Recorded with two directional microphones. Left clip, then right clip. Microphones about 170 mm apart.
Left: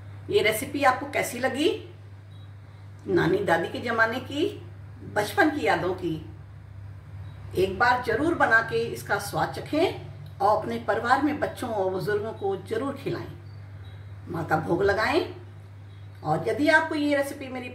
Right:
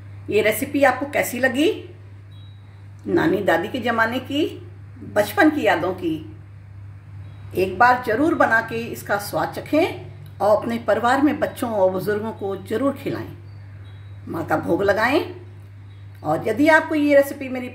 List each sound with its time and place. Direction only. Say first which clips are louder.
0.4 s speech: right 6 dB; 75° right (ahead or behind)
3.2 s speech: right 4 dB; 70° right (ahead or behind)
7.5 s speech: right 6 dB; 70° right (ahead or behind)
14.3 s speech: right 4 dB; 75° right (ahead or behind)
16.3 s speech: right 6 dB; 75° right (ahead or behind)